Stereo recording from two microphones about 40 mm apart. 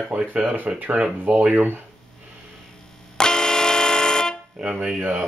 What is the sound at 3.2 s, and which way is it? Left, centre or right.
Vehicle horn, centre.